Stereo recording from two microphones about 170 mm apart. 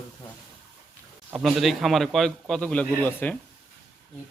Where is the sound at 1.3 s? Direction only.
Centre (ahead or behind).